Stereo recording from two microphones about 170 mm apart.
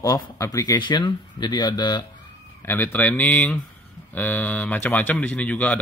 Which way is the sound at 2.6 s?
10° left (ahead or behind).